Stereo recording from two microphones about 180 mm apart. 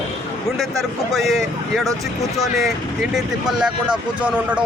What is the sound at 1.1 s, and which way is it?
Speech, centre (ahead or behind).